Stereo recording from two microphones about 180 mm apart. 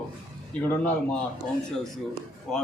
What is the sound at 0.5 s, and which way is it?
Speech, 5° left (ahead or behind).